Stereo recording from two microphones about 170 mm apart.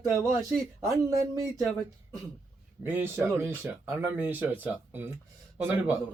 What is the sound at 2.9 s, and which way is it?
Speech, 15° right (ahead or behind).